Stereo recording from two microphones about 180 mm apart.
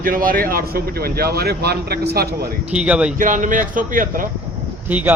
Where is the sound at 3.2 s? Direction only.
45° right (ahead or behind).